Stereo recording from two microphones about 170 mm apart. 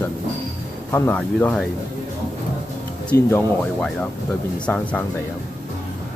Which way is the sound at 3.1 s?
15° left (ahead or behind).